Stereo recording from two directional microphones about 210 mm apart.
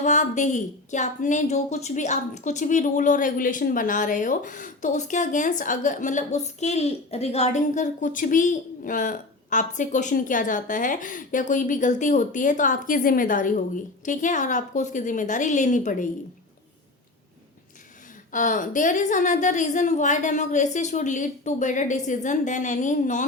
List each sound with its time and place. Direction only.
0.0 s a woman's voice: 35° left (ahead or behind)
18.3 s a woman's voice: 40° left (ahead or behind)